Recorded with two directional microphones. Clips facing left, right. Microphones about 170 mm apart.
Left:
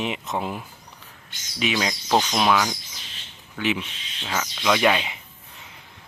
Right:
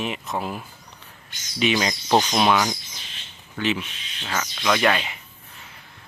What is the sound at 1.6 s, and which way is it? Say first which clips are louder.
Speech: right 3 dB; centre (ahead or behind).